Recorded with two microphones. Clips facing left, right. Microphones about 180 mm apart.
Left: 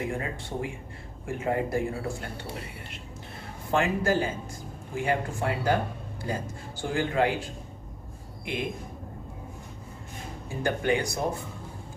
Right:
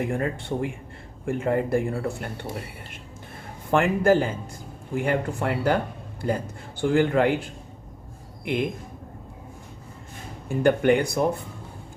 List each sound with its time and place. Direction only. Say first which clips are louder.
0.0 s a man's voice: right 5 dB; 60° right (ahead or behind)
3.7 s a man's voice: right 6 dB; 55° right (ahead or behind)
10.5 s a man's voice: right 7 dB; 60° right (ahead or behind)